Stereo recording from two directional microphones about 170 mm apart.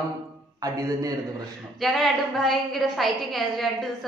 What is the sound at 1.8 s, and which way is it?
A woman's voice, centre (ahead or behind).